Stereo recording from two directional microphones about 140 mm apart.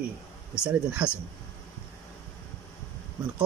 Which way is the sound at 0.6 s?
10° right (ahead or behind).